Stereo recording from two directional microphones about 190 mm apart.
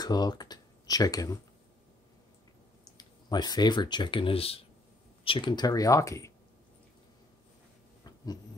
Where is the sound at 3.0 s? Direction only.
20° left (ahead or behind).